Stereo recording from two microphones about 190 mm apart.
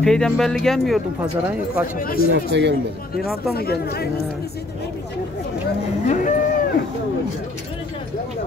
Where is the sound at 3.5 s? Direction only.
55° left (ahead or behind).